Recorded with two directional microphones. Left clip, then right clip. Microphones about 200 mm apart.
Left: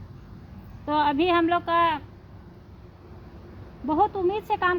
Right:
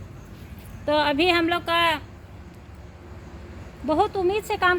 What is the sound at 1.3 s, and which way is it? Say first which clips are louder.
Speech: even; 45° left (ahead or behind).